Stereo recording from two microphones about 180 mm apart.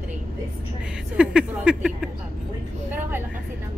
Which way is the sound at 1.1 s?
5° right (ahead or behind).